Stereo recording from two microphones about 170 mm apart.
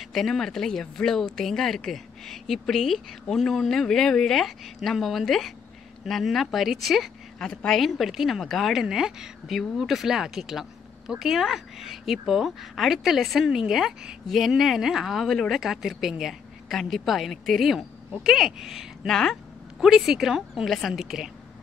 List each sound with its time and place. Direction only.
0.0 s a woman's voice: centre (ahead or behind)